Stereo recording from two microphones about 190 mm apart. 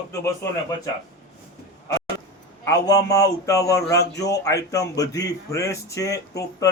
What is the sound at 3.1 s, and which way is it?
Speech, 15° left (ahead or behind).